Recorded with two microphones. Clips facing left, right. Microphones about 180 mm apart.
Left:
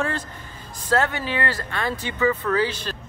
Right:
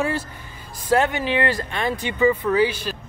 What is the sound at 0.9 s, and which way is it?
Speech, 15° right (ahead or behind).